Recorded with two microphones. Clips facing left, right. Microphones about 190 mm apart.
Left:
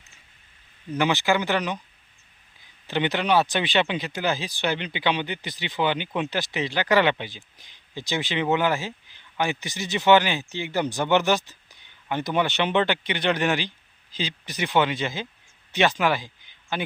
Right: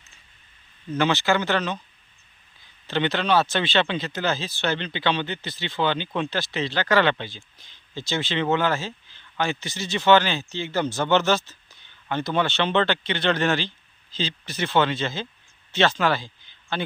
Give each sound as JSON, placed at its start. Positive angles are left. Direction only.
{"t": 0.9, "sound": "speech", "side_deg": 15}
{"t": 2.8, "sound": "speech", "side_deg": 15}